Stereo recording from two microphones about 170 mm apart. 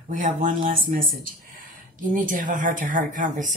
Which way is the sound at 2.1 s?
50° right (ahead or behind).